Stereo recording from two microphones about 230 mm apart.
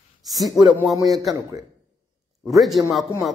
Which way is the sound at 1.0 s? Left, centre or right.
Centre.